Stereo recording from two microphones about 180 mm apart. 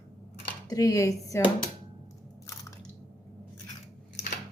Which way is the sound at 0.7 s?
20° left (ahead or behind).